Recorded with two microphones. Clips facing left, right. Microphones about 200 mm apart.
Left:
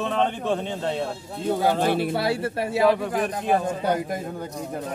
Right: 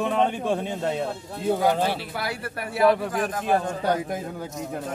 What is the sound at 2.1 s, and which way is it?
Speech, 25° left (ahead or behind).